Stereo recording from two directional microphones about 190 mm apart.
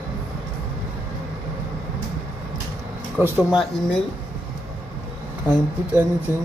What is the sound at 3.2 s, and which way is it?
Speech, 5° right (ahead or behind).